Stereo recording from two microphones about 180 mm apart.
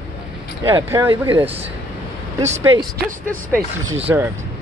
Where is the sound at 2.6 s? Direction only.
15° right (ahead or behind).